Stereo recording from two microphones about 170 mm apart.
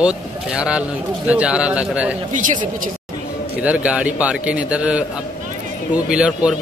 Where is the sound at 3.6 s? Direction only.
10° right (ahead or behind).